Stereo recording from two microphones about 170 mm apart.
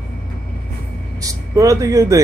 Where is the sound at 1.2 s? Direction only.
20° right (ahead or behind).